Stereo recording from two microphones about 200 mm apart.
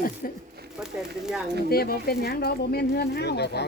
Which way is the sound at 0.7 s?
Centre (ahead or behind).